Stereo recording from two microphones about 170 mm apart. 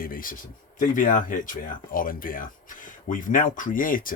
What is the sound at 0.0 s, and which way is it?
Speech, 55° left (ahead or behind).